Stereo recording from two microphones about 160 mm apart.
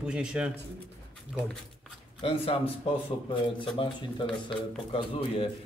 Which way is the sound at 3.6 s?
30° left (ahead or behind).